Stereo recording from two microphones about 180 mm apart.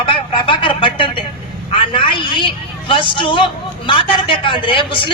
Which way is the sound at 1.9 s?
30° left (ahead or behind).